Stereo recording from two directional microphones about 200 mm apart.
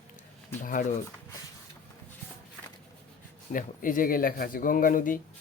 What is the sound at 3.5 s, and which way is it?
Speech, 40° left (ahead or behind).